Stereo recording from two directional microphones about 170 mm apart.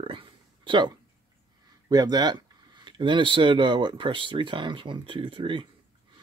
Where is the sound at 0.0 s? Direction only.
30° right (ahead or behind).